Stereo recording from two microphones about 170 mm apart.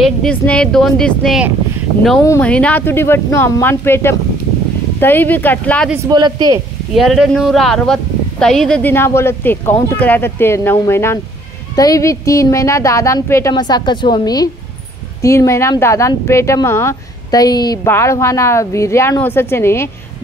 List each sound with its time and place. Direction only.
0.0 s speech: 5° left (ahead or behind)
2.2 s speech: 10° left (ahead or behind)
6.0 s speech: 25° right (ahead or behind)
7.0 s a woman's voice: centre (ahead or behind); by 19.9 s 15° left (ahead or behind)